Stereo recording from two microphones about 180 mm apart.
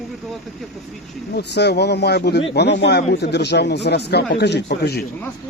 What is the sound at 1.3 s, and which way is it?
A man's voice, 70° left (ahead or behind).